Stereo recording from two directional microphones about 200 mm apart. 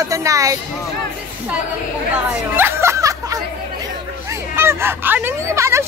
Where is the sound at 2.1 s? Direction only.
10° right (ahead or behind).